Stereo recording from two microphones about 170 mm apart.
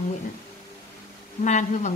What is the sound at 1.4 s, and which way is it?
Speech, 45° left (ahead or behind).